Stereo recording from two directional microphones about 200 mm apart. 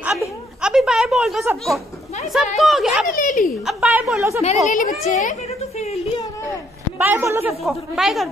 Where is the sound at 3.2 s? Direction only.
40° left (ahead or behind).